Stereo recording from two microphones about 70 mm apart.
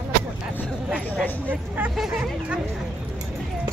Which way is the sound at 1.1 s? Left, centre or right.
Left.